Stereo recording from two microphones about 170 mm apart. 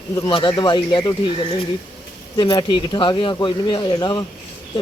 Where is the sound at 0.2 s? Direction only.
30° left (ahead or behind).